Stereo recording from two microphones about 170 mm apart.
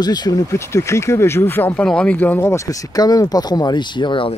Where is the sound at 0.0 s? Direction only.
25° left (ahead or behind).